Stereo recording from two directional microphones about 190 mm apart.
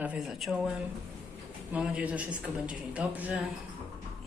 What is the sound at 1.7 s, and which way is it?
Speech, 5° right (ahead or behind).